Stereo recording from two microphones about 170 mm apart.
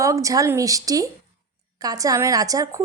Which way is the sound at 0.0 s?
20° right (ahead or behind).